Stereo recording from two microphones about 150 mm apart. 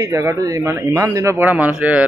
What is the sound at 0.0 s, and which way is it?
A man's voice, 20° right (ahead or behind).